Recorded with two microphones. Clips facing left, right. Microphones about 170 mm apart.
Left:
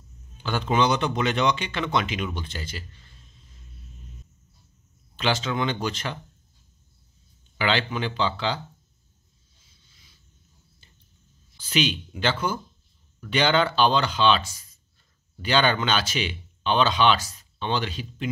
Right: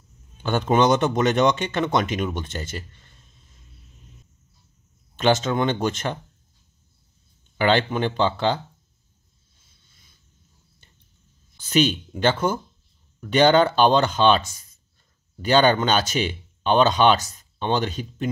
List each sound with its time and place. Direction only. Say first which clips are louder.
0.4 s speech: right 4 dB; 50° right (ahead or behind)
5.1 s speech: right 6 dB; 45° right (ahead or behind)
7.5 s speech: right 5 dB; 50° right (ahead or behind)
11.7 s speech: right 5 dB; 45° right (ahead or behind)
15.4 s speech: right 5 dB; 45° right (ahead or behind)